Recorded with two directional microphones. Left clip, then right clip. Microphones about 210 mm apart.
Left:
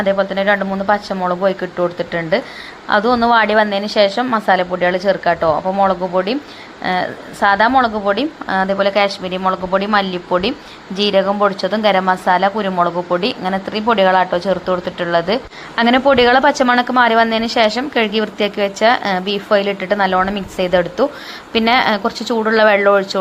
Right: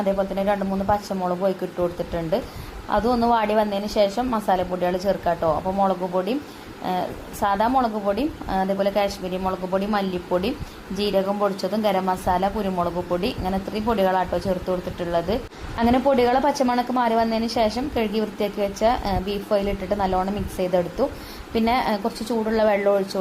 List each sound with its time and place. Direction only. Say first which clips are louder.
0.0 s speech: left 7 dB; 15° left (ahead or behind)